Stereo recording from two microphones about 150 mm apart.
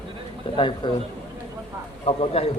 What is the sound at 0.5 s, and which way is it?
Speech, 35° left (ahead or behind).